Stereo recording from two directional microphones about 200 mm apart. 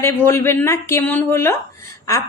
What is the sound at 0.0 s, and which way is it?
A woman's voice, 10° left (ahead or behind).